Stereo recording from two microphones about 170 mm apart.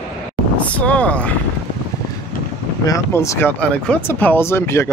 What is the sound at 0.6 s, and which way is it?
Speech, 10° left (ahead or behind).